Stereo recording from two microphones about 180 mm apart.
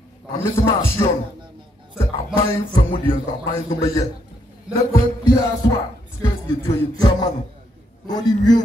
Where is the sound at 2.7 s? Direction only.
30° left (ahead or behind).